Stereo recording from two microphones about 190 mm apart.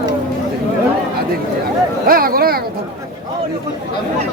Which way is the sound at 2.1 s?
50° right (ahead or behind).